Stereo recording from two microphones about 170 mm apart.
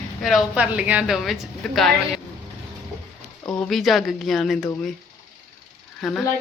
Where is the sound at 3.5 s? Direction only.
5° left (ahead or behind).